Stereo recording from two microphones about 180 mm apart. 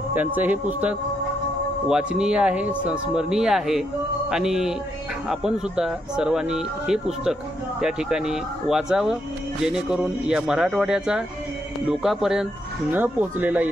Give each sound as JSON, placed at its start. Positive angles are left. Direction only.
{"t": 0.1, "sound": "speech", "side_deg": -10}